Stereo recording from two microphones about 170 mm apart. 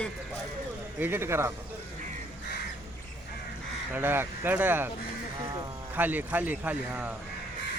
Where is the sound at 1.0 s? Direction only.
15° right (ahead or behind).